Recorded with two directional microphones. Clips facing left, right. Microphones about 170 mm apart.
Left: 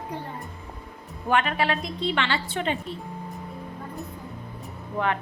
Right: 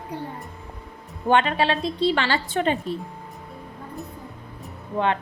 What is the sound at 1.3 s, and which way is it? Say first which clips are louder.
A woman's voice: right 4 dB; 30° right (ahead or behind).